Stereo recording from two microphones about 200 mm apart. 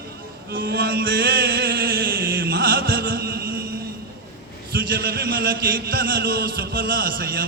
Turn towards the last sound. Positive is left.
turn(degrees=-45)  # may be behind; listen again after turning